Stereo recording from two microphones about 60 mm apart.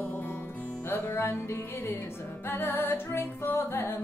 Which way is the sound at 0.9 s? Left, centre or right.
Left.